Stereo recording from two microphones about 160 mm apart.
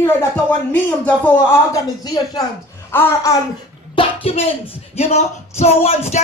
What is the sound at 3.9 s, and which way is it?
A man's voice, 40° left (ahead or behind).